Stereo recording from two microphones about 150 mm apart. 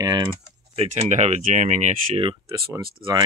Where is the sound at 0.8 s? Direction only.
50° right (ahead or behind).